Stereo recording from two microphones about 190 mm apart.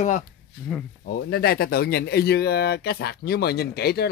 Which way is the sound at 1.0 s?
55° left (ahead or behind).